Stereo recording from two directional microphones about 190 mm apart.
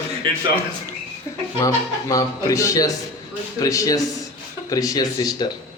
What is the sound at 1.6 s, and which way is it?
Speech, 20° left (ahead or behind).